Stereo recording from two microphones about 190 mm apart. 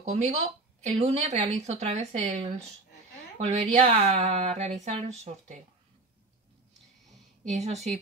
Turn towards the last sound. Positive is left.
turn(degrees=-35)  # may be behind; listen again after turning